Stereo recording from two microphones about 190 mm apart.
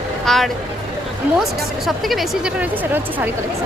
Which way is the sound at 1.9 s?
Centre (ahead or behind).